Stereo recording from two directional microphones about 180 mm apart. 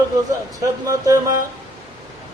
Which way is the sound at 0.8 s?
20° right (ahead or behind).